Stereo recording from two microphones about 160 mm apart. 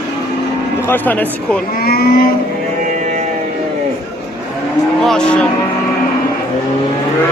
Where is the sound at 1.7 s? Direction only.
70° left (ahead or behind).